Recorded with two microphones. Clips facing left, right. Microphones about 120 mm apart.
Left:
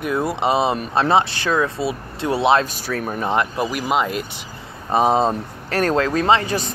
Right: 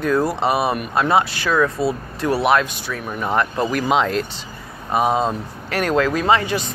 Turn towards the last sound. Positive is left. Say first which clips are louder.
# even
turn(degrees=35)  # may be behind; listen again after turning